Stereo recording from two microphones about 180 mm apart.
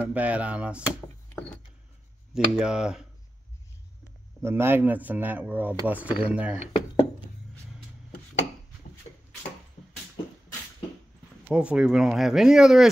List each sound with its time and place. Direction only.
0.0 s speech: 10° right (ahead or behind)
2.3 s speech: 5° right (ahead or behind)
4.4 s speech: 15° right (ahead or behind)
6.6 s a sound: 35° left (ahead or behind)
11.4 s speech: 5° right (ahead or behind)